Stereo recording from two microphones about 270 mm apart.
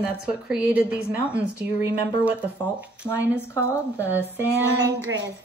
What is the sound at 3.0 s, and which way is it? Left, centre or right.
Speech, centre.